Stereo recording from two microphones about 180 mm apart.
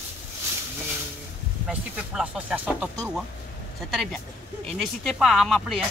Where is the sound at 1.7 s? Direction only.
5° right (ahead or behind).